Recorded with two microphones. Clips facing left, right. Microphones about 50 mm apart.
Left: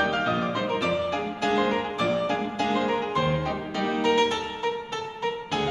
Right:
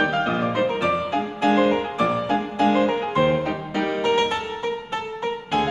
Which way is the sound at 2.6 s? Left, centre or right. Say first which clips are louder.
Right 7 dB; right.